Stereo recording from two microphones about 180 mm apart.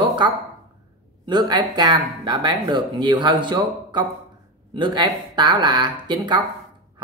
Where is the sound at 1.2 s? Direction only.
25° right (ahead or behind).